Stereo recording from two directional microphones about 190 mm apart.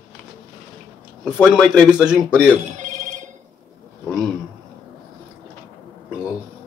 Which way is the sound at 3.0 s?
40° right (ahead or behind).